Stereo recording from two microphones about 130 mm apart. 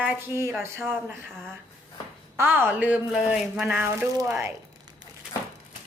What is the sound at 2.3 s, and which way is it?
Speech, 15° right (ahead or behind).